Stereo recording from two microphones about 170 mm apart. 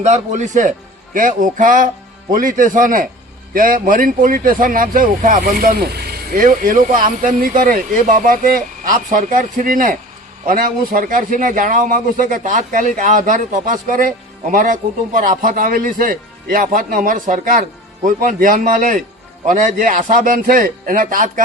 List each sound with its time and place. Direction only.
0.0 s a man's voice: 45° right (ahead or behind)
5.7 s a man's voice: 70° right (ahead or behind); by 21.4 s 50° right (ahead or behind)